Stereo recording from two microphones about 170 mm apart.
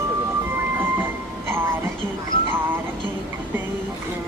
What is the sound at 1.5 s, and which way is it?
Music, 15° right (ahead or behind).